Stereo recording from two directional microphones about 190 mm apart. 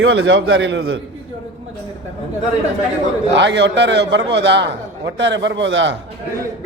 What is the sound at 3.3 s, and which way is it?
A man's voice, 65° right (ahead or behind).